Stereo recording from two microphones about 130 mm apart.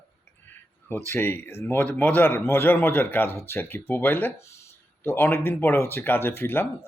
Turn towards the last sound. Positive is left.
turn(degrees=15)  # may be behind; listen again after turning